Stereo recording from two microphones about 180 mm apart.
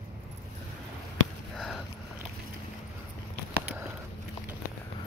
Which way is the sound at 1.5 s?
Centre (ahead or behind).